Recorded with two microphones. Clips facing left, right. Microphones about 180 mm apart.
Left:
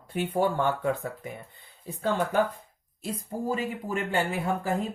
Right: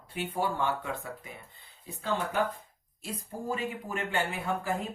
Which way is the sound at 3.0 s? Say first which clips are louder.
Left 5 dB; 35° left (ahead or behind).